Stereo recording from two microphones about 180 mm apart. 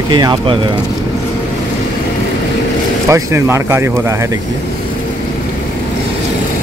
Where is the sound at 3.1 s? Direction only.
15° right (ahead or behind).